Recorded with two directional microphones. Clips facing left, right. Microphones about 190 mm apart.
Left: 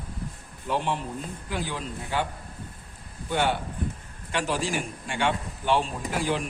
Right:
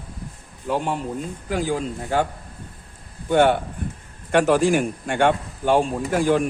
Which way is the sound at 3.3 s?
55° right (ahead or behind).